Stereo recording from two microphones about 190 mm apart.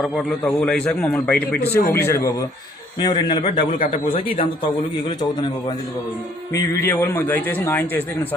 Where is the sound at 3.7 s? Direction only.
45° left (ahead or behind).